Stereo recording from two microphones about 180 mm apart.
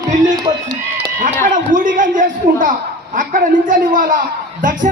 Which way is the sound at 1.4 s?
45° right (ahead or behind).